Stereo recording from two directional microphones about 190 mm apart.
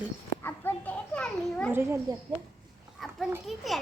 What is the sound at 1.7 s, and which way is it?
Speech, 15° right (ahead or behind).